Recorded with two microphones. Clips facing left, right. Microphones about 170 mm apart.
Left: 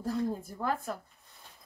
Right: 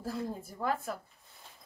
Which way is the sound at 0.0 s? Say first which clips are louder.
Left 5 dB; 5° right (ahead or behind).